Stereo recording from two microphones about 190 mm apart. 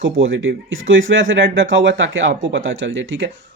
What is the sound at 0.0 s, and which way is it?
Speech, 85° right.